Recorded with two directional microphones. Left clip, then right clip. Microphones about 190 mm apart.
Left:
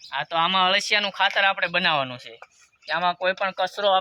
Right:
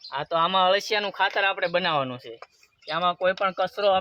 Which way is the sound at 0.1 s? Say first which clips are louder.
Left 1 dB; 45° right (ahead or behind).